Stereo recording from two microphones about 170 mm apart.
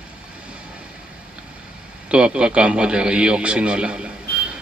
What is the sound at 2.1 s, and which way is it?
A man's voice, 5° right (ahead or behind).